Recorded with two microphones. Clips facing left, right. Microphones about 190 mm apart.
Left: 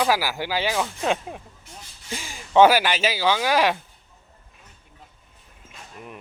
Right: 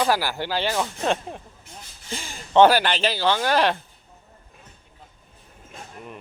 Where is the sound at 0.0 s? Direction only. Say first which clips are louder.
Even; 5° left (ahead or behind).